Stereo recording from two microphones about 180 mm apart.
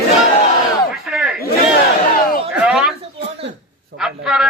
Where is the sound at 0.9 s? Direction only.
Centre (ahead or behind).